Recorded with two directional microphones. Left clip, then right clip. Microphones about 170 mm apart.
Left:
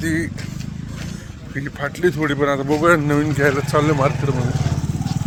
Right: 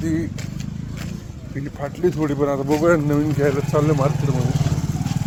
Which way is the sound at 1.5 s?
15° right (ahead or behind).